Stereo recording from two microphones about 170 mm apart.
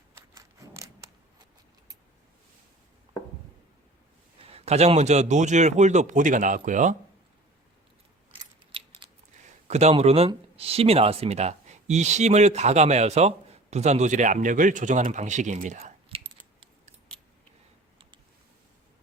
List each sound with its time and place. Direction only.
0.3 s scissors: 20° right (ahead or behind)
4.4 s a man's voice: 35° right (ahead or behind)
8.3 s a sound: 30° right (ahead or behind)
9.6 s speech: 40° right (ahead or behind)